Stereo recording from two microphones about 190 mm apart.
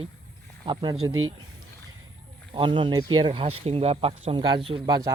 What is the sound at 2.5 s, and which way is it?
Speech, 25° right (ahead or behind).